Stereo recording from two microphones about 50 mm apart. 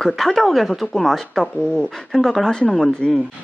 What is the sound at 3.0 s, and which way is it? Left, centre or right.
Speech, centre.